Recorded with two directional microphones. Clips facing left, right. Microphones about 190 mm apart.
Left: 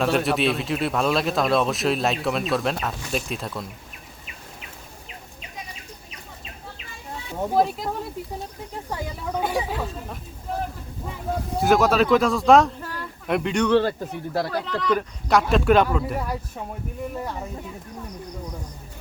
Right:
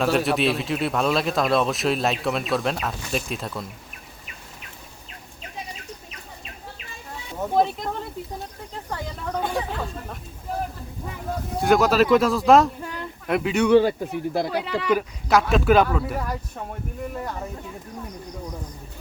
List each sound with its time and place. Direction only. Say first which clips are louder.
0.0 s speech: even; centre (ahead or behind)
7.5 s speech: even; 5° left (ahead or behind)
11.5 s speech: even; centre (ahead or behind)
12.8 s a sound: right 1 dB; 20° right (ahead or behind)
13.2 s speech: right 1 dB; centre (ahead or behind)